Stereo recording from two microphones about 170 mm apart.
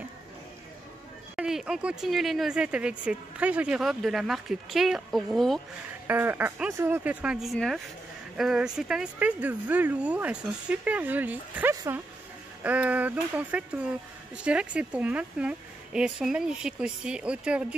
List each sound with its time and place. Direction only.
1.3 s speech: 5° right (ahead or behind)
6.0 s speech: 10° right (ahead or behind)
11.7 s speech: 20° right (ahead or behind)
12.6 s speech: 10° right (ahead or behind)